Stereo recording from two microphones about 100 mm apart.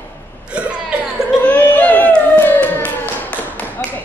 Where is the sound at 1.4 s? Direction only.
15° left (ahead or behind).